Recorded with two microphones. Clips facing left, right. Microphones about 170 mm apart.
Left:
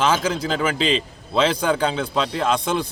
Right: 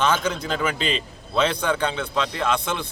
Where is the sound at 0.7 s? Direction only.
90° left.